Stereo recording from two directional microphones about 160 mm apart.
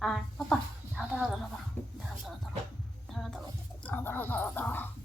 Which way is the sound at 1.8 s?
10° left (ahead or behind).